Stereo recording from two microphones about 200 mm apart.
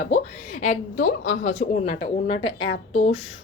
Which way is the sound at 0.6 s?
40° left (ahead or behind).